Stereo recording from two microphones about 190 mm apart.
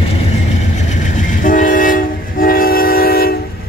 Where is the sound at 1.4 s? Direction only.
45° left (ahead or behind).